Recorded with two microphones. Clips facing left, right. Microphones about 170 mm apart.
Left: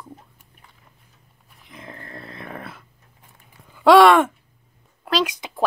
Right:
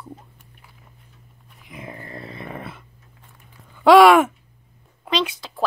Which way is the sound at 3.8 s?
Centre (ahead or behind).